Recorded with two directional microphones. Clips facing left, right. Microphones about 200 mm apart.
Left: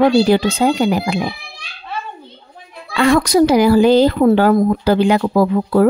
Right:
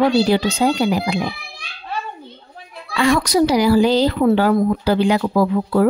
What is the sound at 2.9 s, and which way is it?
Speech, 55° left (ahead or behind).